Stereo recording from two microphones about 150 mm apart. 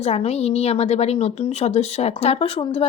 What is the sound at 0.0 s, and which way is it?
A woman's voice, 45° left (ahead or behind).